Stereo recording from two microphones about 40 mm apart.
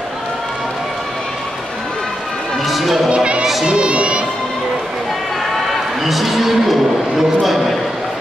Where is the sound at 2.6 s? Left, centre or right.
Centre.